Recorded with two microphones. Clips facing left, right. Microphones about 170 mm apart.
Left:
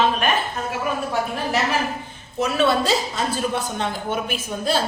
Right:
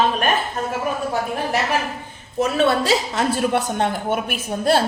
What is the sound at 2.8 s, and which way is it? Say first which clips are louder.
A woman's voice: right 3 dB; 70° right (ahead or behind).